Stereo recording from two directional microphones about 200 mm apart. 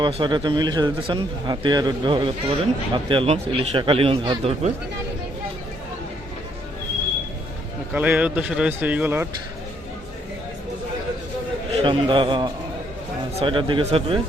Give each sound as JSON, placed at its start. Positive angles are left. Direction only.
{"t": 0.0, "sound": "speech", "side_deg": -25}
{"t": 7.9, "sound": "speech", "side_deg": -5}
{"t": 11.7, "sound": "a man's voice", "side_deg": -25}